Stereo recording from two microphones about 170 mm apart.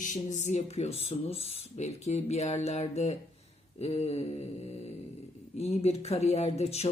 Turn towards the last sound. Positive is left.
turn(degrees=40)  # may be behind; listen again after turning